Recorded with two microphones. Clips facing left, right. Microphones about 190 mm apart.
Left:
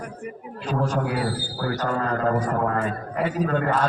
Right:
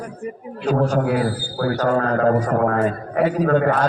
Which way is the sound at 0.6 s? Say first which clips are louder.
Right 6 dB; 60° right (ahead or behind).